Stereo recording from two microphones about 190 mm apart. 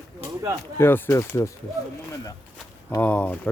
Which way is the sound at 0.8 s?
10° left (ahead or behind).